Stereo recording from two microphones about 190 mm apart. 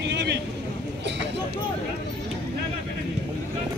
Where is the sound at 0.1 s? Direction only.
65° right (ahead or behind).